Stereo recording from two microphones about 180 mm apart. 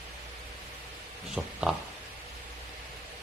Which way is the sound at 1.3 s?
5° right (ahead or behind).